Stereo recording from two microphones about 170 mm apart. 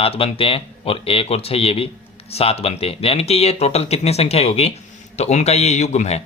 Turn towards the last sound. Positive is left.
turn(degrees=40)  # may be behind; listen again after turning